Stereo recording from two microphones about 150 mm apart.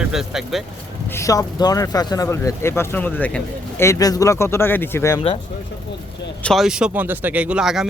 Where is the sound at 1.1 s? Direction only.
20° left (ahead or behind).